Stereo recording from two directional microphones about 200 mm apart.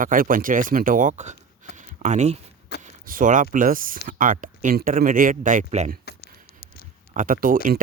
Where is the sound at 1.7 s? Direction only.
35° right (ahead or behind).